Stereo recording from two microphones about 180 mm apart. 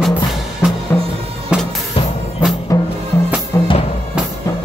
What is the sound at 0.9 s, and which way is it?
Music, 10° left (ahead or behind).